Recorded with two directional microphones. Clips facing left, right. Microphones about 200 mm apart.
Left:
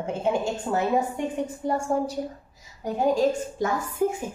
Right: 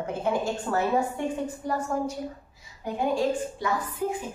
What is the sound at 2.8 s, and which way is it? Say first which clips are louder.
A woman's voice: left 4 dB; 45° left (ahead or behind).